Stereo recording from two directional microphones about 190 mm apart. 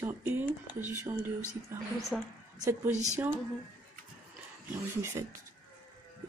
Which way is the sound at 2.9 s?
40° right (ahead or behind).